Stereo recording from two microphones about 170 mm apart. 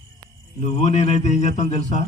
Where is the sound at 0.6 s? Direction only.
40° left (ahead or behind).